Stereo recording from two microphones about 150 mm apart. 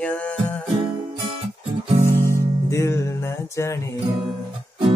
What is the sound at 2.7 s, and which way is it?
Music, 20° left (ahead or behind).